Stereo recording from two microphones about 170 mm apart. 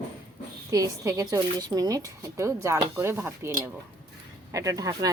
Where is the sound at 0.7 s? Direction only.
20° right (ahead or behind).